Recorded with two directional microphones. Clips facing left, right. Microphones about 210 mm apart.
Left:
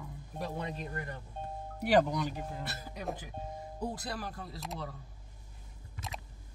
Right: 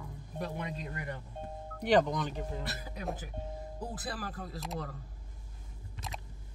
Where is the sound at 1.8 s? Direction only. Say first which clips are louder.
Even; 10° left (ahead or behind).